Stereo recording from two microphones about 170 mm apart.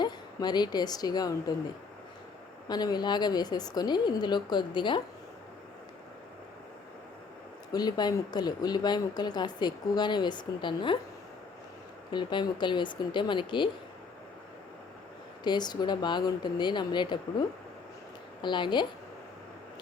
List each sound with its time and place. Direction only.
0.0 s a woman's voice: 25° left (ahead or behind)
2.6 s speech: 25° left (ahead or behind)
7.7 s speech: 25° left (ahead or behind)
12.1 s speech: 25° left (ahead or behind)
15.4 s speech: 25° left (ahead or behind)
18.4 s speech: 25° left (ahead or behind)